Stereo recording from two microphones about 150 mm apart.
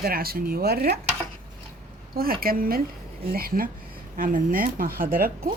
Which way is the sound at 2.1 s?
80° right.